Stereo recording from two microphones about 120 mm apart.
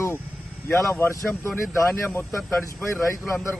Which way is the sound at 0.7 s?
20° left (ahead or behind).